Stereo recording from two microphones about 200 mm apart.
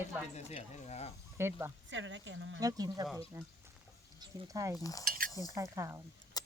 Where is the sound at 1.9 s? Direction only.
70° right (ahead or behind).